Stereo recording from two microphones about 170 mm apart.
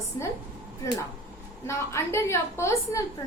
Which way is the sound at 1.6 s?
15° left (ahead or behind).